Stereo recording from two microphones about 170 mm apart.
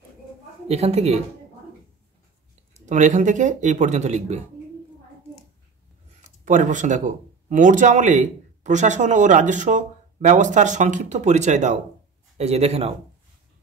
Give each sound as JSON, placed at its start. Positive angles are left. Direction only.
{"t": 0.7, "sound": "a woman's voice", "side_deg": -35}
{"t": 2.9, "sound": "speech", "side_deg": -45}
{"t": 6.4, "sound": "a woman's voice", "side_deg": -45}